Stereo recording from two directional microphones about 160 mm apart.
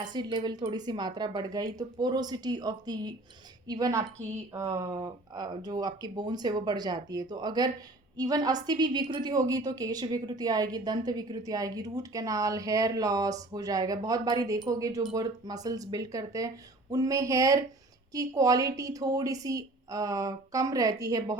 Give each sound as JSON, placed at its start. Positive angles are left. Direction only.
{"t": 0.0, "sound": "a woman's voice", "side_deg": -25}